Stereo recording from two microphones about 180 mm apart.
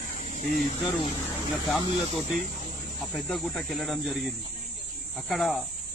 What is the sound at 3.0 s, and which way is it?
Speech, centre (ahead or behind).